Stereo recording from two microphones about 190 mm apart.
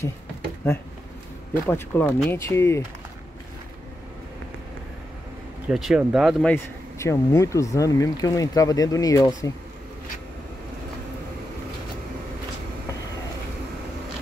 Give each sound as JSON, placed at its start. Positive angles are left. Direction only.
{"t": 1.7, "sound": "speech", "side_deg": 15}
{"t": 5.7, "sound": "speech", "side_deg": 0}
{"t": 6.5, "sound": "speech", "side_deg": 15}